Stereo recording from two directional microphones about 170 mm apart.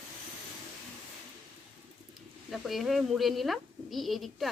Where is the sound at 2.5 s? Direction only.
Centre (ahead or behind).